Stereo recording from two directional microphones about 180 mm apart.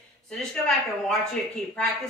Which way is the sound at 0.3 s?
Centre (ahead or behind).